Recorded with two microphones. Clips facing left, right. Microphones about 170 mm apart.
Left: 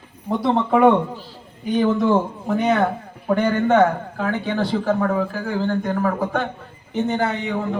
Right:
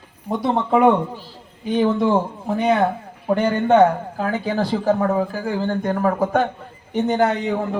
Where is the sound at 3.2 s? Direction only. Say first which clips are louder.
Even; 30° right (ahead or behind).